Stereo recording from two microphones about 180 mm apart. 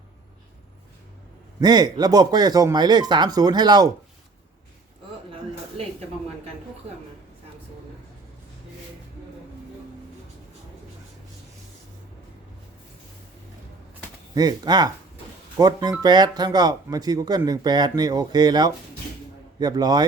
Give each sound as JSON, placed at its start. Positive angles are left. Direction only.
{"t": 1.6, "sound": "speech", "side_deg": -20}
{"t": 14.3, "sound": "speech", "side_deg": -20}